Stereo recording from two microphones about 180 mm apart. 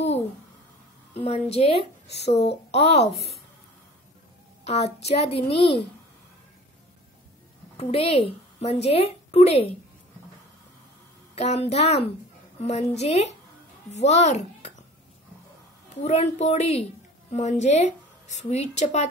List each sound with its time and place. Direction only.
1.1 s a woman's voice: 35° left (ahead or behind)
4.6 s a woman's voice: 35° left (ahead or behind)
7.7 s a woman's voice: 35° left (ahead or behind)
11.3 s a woman's voice: 35° left (ahead or behind)
16.0 s a woman's voice: 35° left (ahead or behind)